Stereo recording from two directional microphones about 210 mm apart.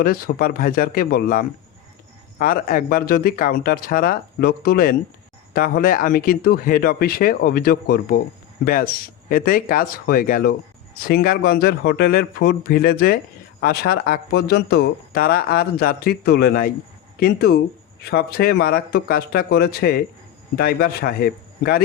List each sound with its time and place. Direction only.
0.0 s speech: 45° left (ahead or behind)